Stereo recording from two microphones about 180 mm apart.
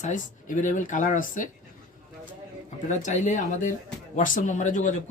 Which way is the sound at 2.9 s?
40° left (ahead or behind).